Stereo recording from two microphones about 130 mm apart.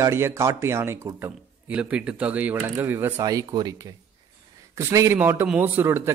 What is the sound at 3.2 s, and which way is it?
Speech, 30° right (ahead or behind).